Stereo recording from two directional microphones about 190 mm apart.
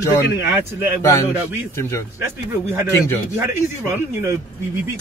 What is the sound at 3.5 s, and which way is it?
Speech, 10° right (ahead or behind).